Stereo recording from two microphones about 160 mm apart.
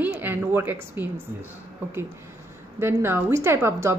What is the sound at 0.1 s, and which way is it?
A woman's voice, 15° right (ahead or behind).